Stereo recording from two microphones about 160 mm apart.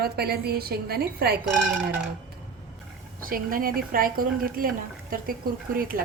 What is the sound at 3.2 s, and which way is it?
A woman's voice, 65° right (ahead or behind).